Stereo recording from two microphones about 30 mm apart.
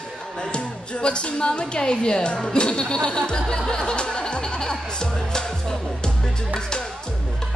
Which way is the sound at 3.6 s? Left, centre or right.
Left.